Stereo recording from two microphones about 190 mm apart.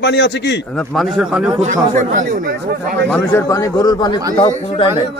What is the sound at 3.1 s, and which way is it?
Speech, 10° left (ahead or behind).